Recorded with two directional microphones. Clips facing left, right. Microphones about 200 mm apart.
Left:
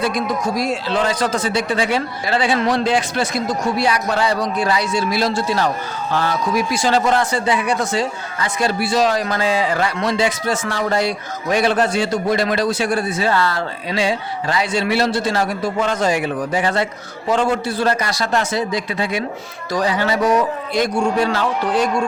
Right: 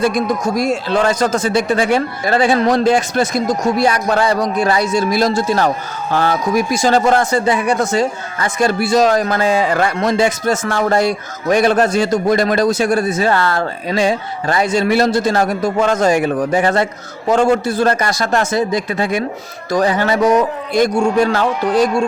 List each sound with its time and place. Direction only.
0.0 s speech: 45° right (ahead or behind)